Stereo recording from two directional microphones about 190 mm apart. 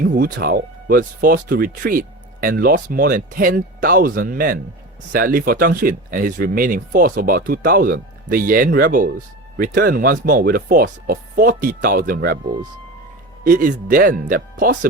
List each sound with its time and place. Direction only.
0.0 s speech: 55° right (ahead or behind)
13.4 s speech: 45° right (ahead or behind)